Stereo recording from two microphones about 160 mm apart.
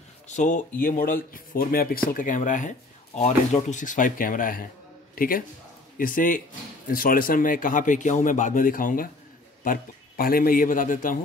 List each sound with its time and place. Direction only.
0.3 s a man's voice: 50° left (ahead or behind)